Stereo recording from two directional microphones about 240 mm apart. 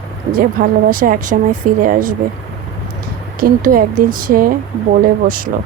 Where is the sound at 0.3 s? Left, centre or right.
Right.